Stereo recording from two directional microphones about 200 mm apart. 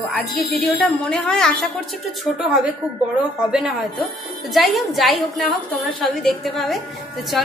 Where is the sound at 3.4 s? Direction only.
5° right (ahead or behind).